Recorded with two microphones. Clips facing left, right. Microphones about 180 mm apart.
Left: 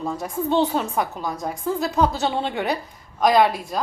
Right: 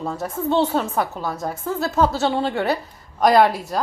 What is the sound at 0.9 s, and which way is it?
A woman's voice, 15° left (ahead or behind).